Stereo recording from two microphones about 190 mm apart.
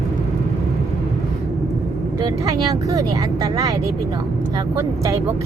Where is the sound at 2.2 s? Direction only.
20° right (ahead or behind).